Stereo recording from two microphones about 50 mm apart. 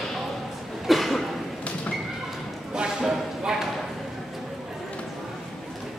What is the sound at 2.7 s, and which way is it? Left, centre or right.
Clip-clop, centre.